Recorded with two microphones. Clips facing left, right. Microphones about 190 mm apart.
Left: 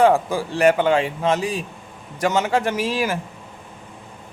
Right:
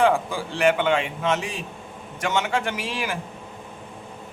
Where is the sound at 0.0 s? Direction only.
40° left (ahead or behind).